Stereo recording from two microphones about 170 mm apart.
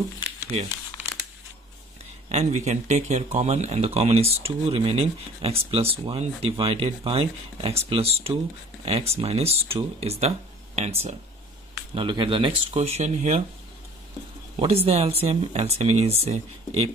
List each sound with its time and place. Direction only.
1.0 s a sound: 10° right (ahead or behind)
2.2 s speech: 40° right (ahead or behind)
11.9 s speech: 30° right (ahead or behind)
14.6 s speech: 35° right (ahead or behind)